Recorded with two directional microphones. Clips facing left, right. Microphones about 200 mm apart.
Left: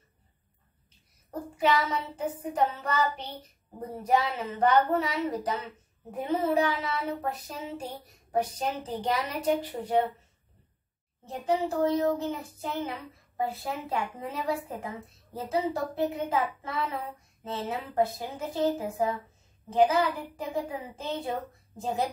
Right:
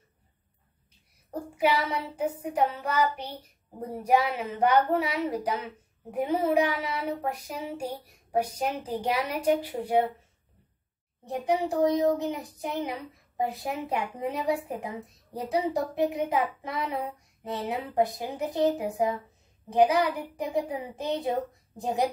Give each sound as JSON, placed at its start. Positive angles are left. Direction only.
{"t": 1.6, "sound": "speech", "side_deg": -10}
{"t": 11.3, "sound": "speech", "side_deg": -15}